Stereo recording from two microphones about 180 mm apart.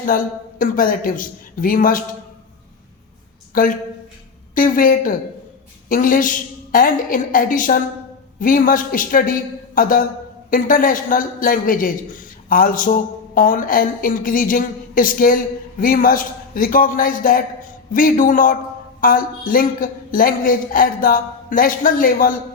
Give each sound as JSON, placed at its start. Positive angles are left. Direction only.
{"t": 0.6, "sound": "a man's voice", "side_deg": 50}
{"t": 3.5, "sound": "a woman's voice", "side_deg": 50}